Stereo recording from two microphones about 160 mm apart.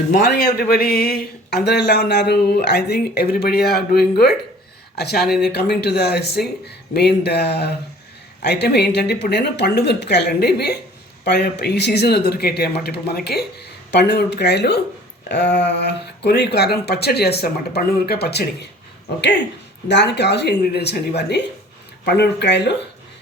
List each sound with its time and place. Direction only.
0.1 s speech: 90° left
4.9 s speech: 90° left
19.9 s speech: 90° left
21.2 s speech: 90° left